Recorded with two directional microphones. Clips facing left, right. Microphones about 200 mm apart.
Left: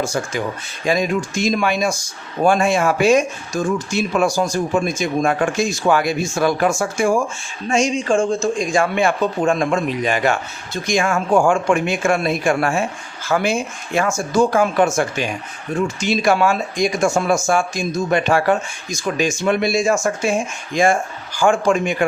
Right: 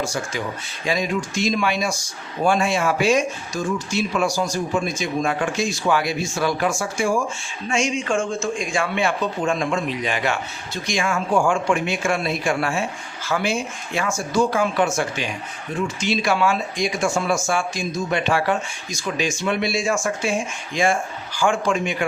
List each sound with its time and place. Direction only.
0.9 s speech: 50° left (ahead or behind)